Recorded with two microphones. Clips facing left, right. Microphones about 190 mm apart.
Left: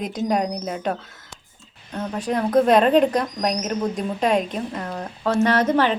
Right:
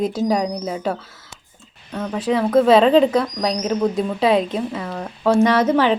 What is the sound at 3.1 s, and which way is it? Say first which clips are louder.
Speech: right 3 dB; 15° left (ahead or behind).